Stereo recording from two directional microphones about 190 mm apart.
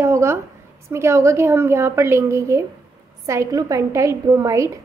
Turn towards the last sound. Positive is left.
turn(degrees=-15)  # may be behind; listen again after turning